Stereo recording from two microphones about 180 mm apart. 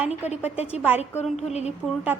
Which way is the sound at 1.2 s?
35° left (ahead or behind).